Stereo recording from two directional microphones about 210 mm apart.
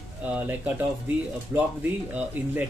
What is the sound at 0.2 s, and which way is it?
Speech, 5° right (ahead or behind).